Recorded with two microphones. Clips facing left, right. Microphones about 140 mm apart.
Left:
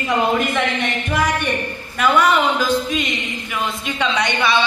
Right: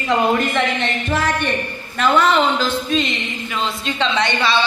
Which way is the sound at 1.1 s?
15° left (ahead or behind).